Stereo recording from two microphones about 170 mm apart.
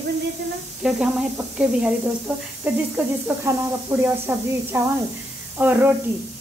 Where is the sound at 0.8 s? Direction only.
5° right (ahead or behind).